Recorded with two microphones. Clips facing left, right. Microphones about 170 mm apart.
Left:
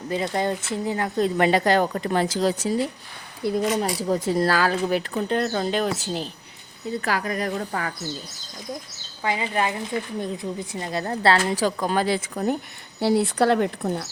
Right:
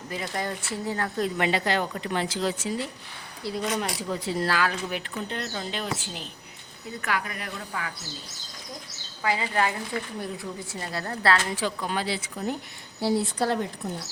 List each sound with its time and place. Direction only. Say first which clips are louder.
0.1 s speech: left 7 dB; 25° left (ahead or behind)
1.4 s speech: left 7 dB; 45° left (ahead or behind)
3.4 s speech: left 8 dB; 55° left (ahead or behind)
4.0 s speech: left 6 dB; 45° left (ahead or behind)
5.1 s speech: left 9 dB; 50° left (ahead or behind)
9.2 s speech: left 1 dB; 20° left (ahead or behind)
11.5 s speech: left 6 dB; 40° left (ahead or behind)
13.0 s a woman's voice: left 5 dB; 70° left (ahead or behind)